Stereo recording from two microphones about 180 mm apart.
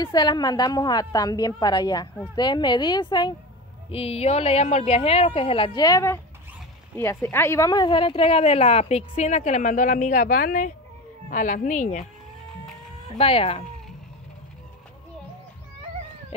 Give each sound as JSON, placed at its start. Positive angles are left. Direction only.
{"t": 0.0, "sound": "a woman's voice", "side_deg": 25}
{"t": 13.2, "sound": "speech", "side_deg": 30}